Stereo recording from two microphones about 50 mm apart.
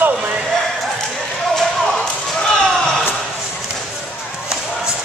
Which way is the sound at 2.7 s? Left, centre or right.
Centre.